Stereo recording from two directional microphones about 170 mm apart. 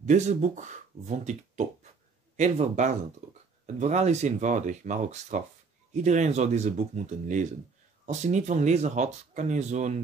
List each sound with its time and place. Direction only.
0.0 s speech: 45° right (ahead or behind)